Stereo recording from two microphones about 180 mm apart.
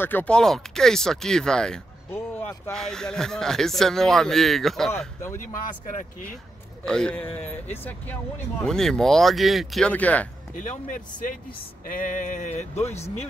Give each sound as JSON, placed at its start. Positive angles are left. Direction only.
{"t": 0.0, "sound": "speech", "side_deg": 10}
{"t": 4.9, "sound": "speech", "side_deg": 15}
{"t": 5.4, "sound": "speech", "side_deg": 45}
{"t": 6.8, "sound": "speech", "side_deg": 5}
{"t": 10.5, "sound": "speech", "side_deg": 45}